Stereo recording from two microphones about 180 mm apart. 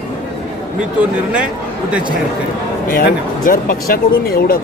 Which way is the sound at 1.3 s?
5° right (ahead or behind).